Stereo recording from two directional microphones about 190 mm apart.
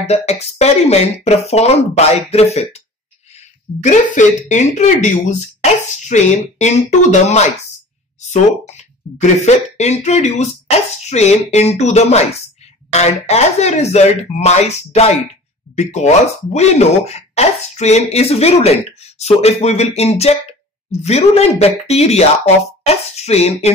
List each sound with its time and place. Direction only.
0.0 s speech: 35° left (ahead or behind)
3.8 s speech: 40° left (ahead or behind)